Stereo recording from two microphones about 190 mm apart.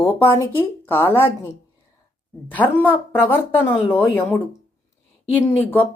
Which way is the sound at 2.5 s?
10° left (ahead or behind).